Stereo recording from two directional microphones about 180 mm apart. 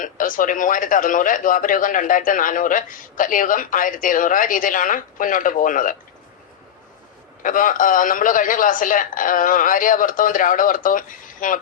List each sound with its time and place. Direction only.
0.0 s a man's voice: 50° left (ahead or behind)
7.4 s a man's voice: 50° left (ahead or behind)